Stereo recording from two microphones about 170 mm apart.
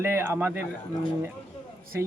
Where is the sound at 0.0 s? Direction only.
15° right (ahead or behind).